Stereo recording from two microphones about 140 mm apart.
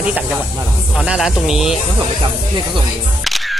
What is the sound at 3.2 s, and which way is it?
Single-lens reflex camera, centre (ahead or behind).